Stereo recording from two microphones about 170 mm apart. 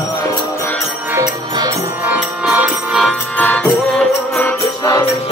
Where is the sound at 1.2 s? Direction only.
25° right (ahead or behind).